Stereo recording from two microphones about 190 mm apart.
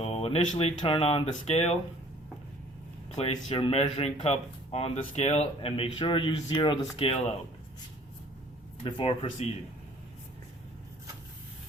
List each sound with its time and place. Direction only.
0.0 s speech: 35° left (ahead or behind)
3.2 s speech: 30° left (ahead or behind)
8.8 s speech: 30° left (ahead or behind)